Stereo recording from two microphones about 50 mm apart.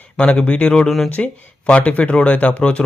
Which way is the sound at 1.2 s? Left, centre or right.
Left.